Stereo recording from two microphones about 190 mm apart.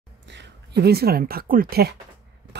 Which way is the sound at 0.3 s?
65° right (ahead or behind).